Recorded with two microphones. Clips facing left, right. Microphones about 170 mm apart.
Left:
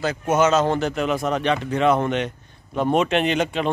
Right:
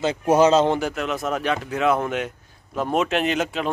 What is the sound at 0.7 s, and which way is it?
Speech, 10° right (ahead or behind).